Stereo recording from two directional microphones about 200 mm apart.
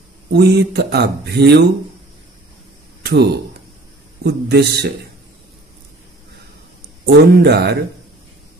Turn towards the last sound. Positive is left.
turn(degrees=-55)  # may be behind; listen again after turning